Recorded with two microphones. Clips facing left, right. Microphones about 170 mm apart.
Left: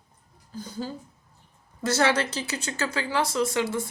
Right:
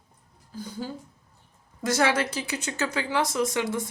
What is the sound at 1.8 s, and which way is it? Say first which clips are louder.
Speech: even; 15° right (ahead or behind).